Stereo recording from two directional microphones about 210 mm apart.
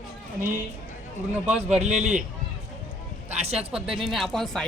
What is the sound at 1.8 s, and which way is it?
Speech, 30° right (ahead or behind).